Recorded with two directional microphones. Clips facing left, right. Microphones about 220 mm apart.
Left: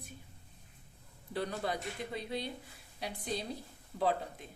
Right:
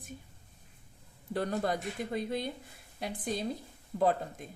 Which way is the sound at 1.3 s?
45° right (ahead or behind).